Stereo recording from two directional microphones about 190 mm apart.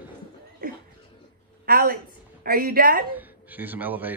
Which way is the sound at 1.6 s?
50° right (ahead or behind).